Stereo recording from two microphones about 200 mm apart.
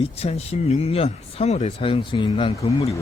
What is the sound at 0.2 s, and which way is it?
Speech, 30° left (ahead or behind).